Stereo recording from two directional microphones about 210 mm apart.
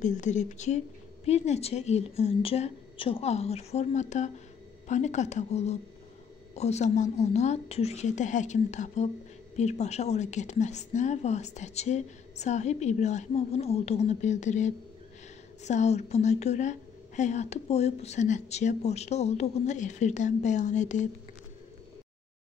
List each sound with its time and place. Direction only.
0.0 s a woman's voice: 35° left (ahead or behind)